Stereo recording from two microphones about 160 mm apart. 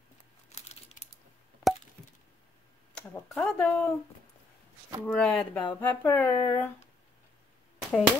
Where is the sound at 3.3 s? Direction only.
5° left (ahead or behind).